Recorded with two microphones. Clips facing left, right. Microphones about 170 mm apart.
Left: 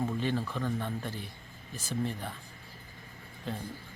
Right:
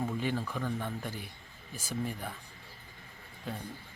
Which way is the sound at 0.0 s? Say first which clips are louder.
Left 2 dB; 10° right (ahead or behind).